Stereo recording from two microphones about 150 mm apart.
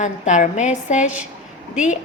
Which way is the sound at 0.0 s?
55° left (ahead or behind).